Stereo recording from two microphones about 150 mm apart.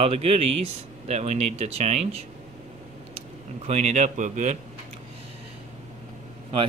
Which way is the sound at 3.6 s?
50° right (ahead or behind).